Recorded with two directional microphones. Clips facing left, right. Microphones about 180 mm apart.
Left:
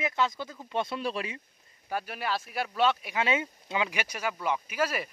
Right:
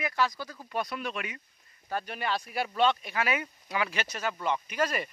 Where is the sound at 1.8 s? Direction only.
5° left (ahead or behind).